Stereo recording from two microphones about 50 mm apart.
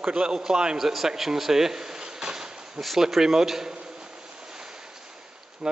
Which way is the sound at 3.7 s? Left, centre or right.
Centre.